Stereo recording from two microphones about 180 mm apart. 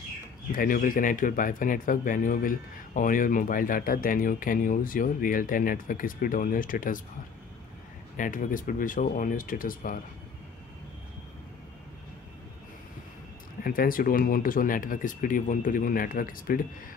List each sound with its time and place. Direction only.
0.5 s speech: 50° left (ahead or behind)
8.2 s speech: 50° left (ahead or behind)
13.7 s speech: 50° left (ahead or behind)